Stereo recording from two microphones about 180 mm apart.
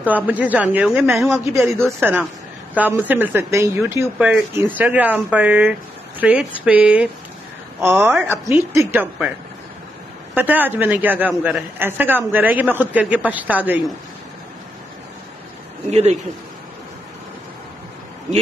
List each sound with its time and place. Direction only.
0.0 s a man's voice: 10° right (ahead or behind)
1.5 s a man's voice: 15° right (ahead or behind)
8.1 s a man's voice: 15° right (ahead or behind)
10.3 s a man's voice: 10° right (ahead or behind)
15.9 s a man's voice: 40° right (ahead or behind)